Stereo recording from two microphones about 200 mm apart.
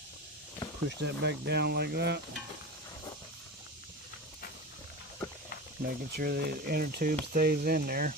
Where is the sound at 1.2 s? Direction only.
55° right (ahead or behind).